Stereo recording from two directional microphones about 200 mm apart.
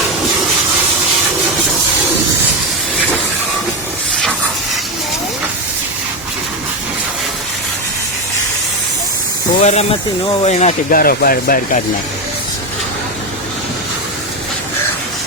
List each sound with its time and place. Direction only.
9.6 s speech: 35° left (ahead or behind)